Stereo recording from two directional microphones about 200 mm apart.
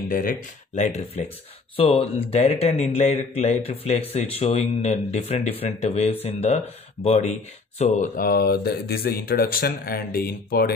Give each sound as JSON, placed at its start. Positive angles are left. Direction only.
{"t": 0.1, "sound": "a man's voice", "side_deg": 45}